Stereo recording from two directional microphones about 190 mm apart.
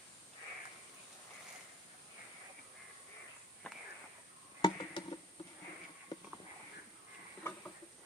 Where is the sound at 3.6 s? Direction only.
5° left (ahead or behind).